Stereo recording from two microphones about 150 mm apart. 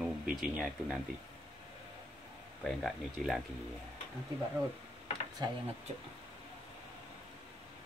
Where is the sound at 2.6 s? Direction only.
Centre (ahead or behind).